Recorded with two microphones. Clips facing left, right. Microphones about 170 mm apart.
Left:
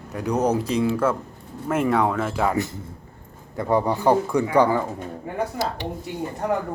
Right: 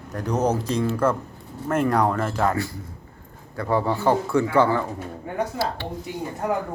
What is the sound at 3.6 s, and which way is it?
Speech, 20° left (ahead or behind).